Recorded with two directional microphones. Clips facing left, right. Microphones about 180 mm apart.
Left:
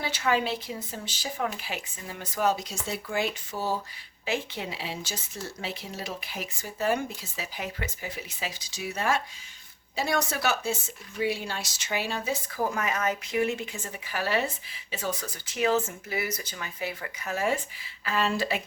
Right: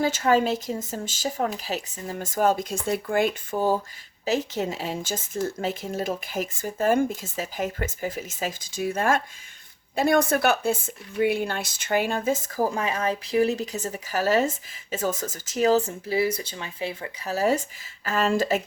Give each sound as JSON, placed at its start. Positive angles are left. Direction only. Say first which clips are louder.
{"t": 0.0, "sound": "speech", "louder": "right 6 dB", "side_deg": -45}